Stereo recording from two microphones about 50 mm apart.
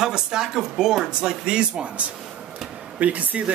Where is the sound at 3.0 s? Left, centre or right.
Right.